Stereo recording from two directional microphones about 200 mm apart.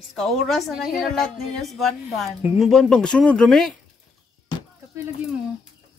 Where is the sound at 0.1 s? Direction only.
Centre (ahead or behind).